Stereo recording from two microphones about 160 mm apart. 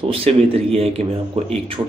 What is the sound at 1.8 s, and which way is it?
Speech, 25° right (ahead or behind).